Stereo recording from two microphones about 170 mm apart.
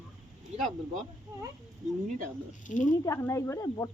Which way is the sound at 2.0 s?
50° right (ahead or behind).